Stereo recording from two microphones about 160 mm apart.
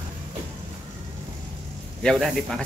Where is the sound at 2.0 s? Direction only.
Centre (ahead or behind).